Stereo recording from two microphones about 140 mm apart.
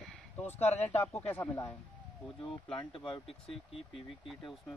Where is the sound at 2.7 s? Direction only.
40° left (ahead or behind).